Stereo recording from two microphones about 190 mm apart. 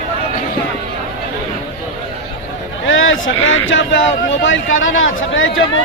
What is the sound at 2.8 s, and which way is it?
Speech, 90° left.